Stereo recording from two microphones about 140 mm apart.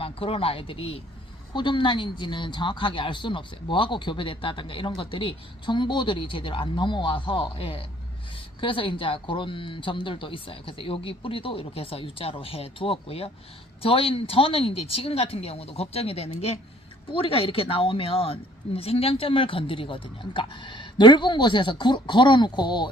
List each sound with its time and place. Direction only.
0.0 s speech: 40° left (ahead or behind)